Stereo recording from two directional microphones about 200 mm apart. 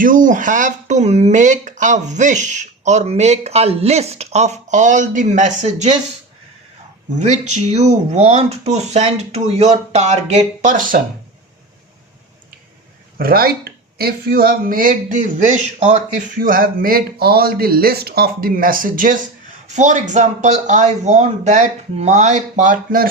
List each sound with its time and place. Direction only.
0.0 s speech: 40° right (ahead or behind)
7.2 s speech: 35° right (ahead or behind)
13.1 s speech: 45° right (ahead or behind)